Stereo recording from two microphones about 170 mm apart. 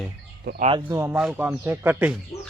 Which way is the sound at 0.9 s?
15° right (ahead or behind).